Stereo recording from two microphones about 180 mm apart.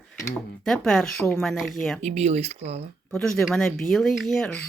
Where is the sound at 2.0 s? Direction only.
40° right (ahead or behind).